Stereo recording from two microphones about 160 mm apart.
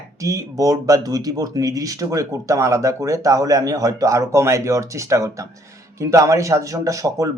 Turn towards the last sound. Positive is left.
turn(degrees=-20)  # may be behind; listen again after turning